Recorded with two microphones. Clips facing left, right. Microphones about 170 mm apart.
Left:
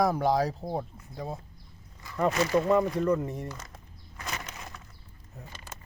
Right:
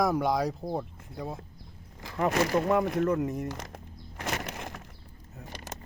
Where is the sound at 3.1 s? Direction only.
5° right (ahead or behind).